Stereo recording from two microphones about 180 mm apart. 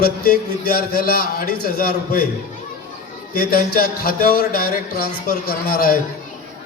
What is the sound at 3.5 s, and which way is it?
A man's voice, 55° left (ahead or behind).